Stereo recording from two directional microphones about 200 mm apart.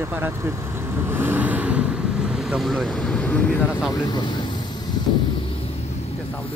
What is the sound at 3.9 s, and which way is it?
Speech, 20° left (ahead or behind).